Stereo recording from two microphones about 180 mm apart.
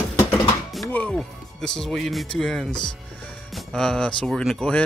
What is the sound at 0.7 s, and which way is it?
Speech, 5° left (ahead or behind).